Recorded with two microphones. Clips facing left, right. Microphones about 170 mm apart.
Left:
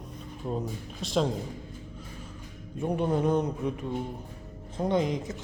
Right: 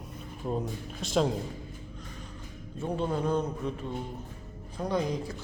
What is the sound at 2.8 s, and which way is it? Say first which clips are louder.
Speech: left 3 dB; 15° left (ahead or behind).